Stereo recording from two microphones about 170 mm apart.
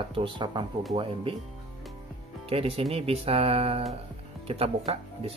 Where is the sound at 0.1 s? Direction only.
30° right (ahead or behind).